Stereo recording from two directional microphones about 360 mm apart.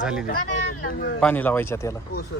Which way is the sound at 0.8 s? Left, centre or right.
Left.